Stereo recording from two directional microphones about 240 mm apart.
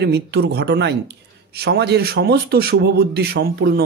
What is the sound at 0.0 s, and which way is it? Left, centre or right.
Speech, right.